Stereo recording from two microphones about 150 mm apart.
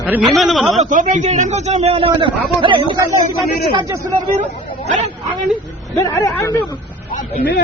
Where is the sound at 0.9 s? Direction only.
60° right (ahead or behind); by 3.0 s 35° right (ahead or behind).